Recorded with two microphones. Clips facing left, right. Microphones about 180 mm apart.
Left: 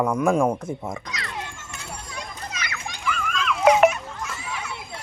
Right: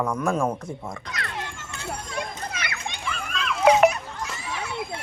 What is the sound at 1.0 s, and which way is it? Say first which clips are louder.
Children playing: even; 55° right (ahead or behind).